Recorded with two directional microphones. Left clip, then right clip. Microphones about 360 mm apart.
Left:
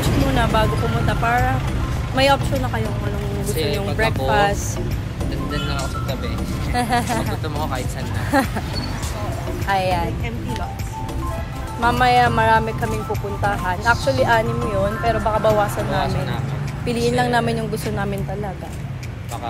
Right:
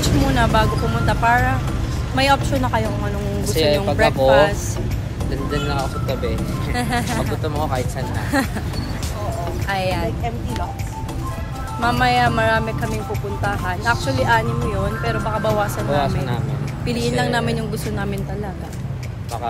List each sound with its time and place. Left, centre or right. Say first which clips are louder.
0.0 s speech: right 1 dB; centre
3.4 s speech: right 6 dB; centre
4.3 s speech: right 3 dB; centre
6.7 s speech: left 3 dB; centre
9.7 s speech: left 3 dB; centre
11.8 s speech: left 2 dB; centre
16.0 s speech: right 1 dB; centre
16.8 s speech: left 2 dB; centre